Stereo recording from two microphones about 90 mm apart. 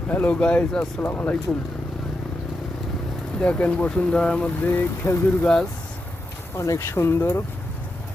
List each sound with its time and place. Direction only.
0.1 s speech: 15° left (ahead or behind)
1.0 s speech: 20° left (ahead or behind)
3.4 s speech: 15° left (ahead or behind)
4.7 s speech: 25° left (ahead or behind)
6.6 s speech: 30° left (ahead or behind)